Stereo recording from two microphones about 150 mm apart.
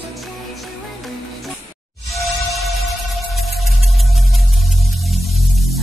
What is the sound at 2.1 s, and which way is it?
Music, centre (ahead or behind).